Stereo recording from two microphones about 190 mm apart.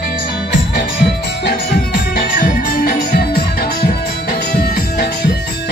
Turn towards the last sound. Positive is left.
turn(degrees=55)  # may be behind; listen again after turning